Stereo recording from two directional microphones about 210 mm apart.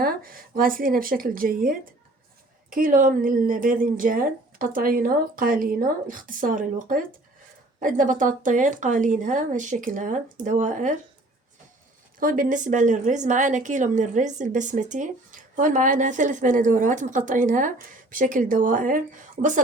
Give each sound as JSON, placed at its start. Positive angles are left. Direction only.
{"t": 0.0, "sound": "a woman's voice", "side_deg": -45}
{"t": 12.2, "sound": "a woman's voice", "side_deg": -40}